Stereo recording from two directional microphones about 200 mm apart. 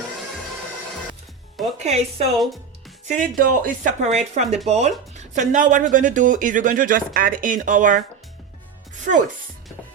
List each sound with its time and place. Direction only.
1.8 s speech: 30° right (ahead or behind)
2.3 s speech: centre (ahead or behind)
3.1 s speech: 40° right (ahead or behind)
9.1 s speech: 40° right (ahead or behind)